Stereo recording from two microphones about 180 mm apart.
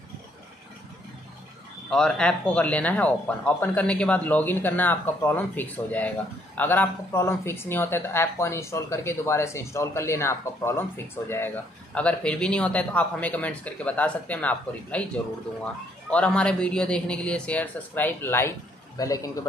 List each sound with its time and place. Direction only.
1.9 s a man's voice: 5° left (ahead or behind); by 19.3 s 20° left (ahead or behind)